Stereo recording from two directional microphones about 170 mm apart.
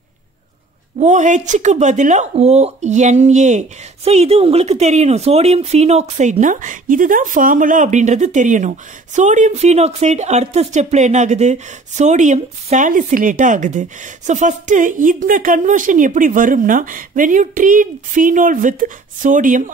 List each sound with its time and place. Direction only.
0.9 s speech: 45° right (ahead or behind)